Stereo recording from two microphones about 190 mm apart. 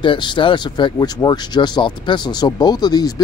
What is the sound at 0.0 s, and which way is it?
Speech, 25° left (ahead or behind).